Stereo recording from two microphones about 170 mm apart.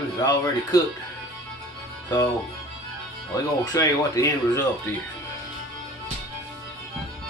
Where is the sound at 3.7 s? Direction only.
20° left (ahead or behind).